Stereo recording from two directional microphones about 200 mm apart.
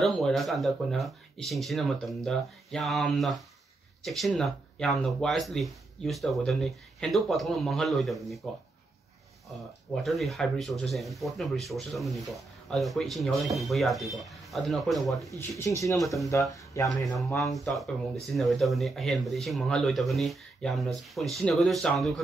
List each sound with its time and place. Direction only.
0.0 s speech: centre (ahead or behind)
10.0 s speech: centre (ahead or behind)
17.0 s speech: 15° left (ahead or behind)
17.6 s speech: centre (ahead or behind)